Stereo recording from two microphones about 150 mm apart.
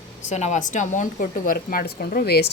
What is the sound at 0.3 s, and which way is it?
A woman's voice, 50° left (ahead or behind).